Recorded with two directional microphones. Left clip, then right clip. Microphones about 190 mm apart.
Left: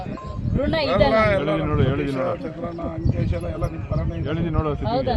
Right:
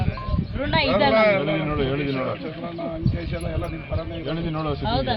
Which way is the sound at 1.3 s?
Centre (ahead or behind).